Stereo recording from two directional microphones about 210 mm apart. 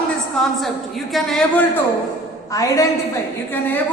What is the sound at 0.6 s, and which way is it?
A woman's voice, centre (ahead or behind).